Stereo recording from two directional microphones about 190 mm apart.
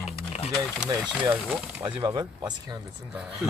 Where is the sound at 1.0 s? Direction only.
5° right (ahead or behind).